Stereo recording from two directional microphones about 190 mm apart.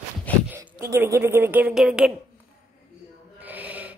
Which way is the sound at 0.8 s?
15° right (ahead or behind).